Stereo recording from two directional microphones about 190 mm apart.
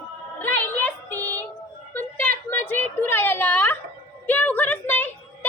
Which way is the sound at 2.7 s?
10° left (ahead or behind).